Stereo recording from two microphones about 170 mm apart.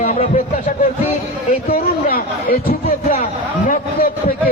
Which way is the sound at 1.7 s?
60° left (ahead or behind).